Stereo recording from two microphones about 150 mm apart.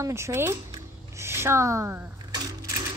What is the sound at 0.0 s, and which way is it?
Speech, 20° right (ahead or behind).